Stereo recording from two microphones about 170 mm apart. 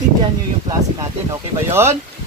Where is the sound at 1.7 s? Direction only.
15° right (ahead or behind).